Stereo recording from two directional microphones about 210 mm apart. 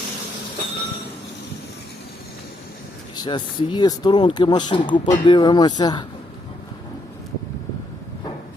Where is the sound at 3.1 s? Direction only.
20° left (ahead or behind).